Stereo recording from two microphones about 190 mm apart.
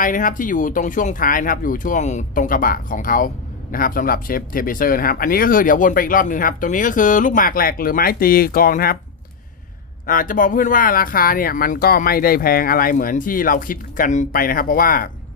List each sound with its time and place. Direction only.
0.0 s speech: 45° left (ahead or behind)
10.1 s speech: 45° left (ahead or behind)